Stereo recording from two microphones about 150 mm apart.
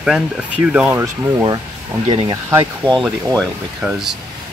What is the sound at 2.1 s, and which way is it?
Speech, 40° right (ahead or behind).